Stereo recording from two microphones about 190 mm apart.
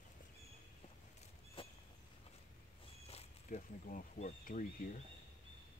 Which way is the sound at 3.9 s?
40° left (ahead or behind).